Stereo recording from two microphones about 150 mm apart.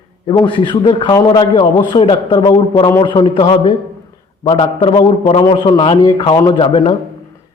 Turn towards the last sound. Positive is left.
turn(degrees=35)  # may be behind; listen again after turning